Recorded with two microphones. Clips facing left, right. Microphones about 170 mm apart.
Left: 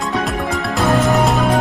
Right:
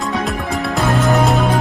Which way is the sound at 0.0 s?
Centre (ahead or behind).